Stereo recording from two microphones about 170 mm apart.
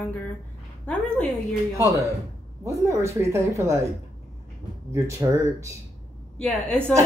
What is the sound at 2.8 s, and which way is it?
A woman's voice, 15° right (ahead or behind).